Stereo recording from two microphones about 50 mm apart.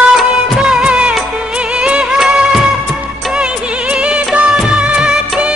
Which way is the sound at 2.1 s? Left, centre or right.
Centre.